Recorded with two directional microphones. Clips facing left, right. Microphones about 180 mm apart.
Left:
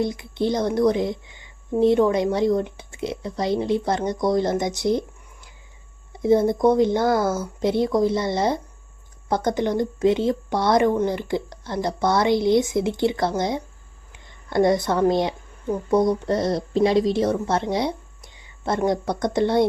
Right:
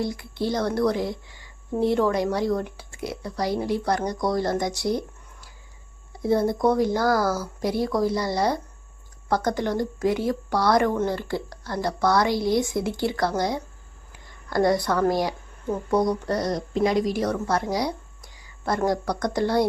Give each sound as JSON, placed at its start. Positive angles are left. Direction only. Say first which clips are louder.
{"t": 0.0, "sound": "a woman's voice", "louder": "left 4 dB", "side_deg": 20}